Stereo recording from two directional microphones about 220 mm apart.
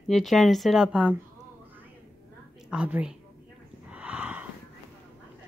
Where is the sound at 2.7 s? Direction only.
5° right (ahead or behind).